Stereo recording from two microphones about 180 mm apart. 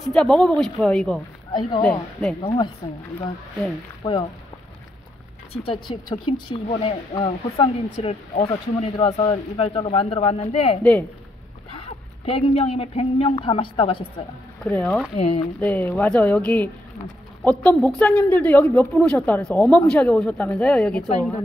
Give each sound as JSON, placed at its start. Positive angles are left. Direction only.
{"t": 0.1, "sound": "speech", "side_deg": 5}
{"t": 1.5, "sound": "speech", "side_deg": 25}
{"t": 1.8, "sound": "speech", "side_deg": 5}
{"t": 2.4, "sound": "speech", "side_deg": 25}
{"t": 4.0, "sound": "speech", "side_deg": 25}
{"t": 5.5, "sound": "speech", "side_deg": 30}
{"t": 10.8, "sound": "a woman's voice", "side_deg": 5}
{"t": 12.3, "sound": "speech", "side_deg": 30}
{"t": 14.6, "sound": "speech", "side_deg": 5}
{"t": 15.1, "sound": "speech", "side_deg": 35}
{"t": 15.6, "sound": "a woman's voice", "side_deg": 10}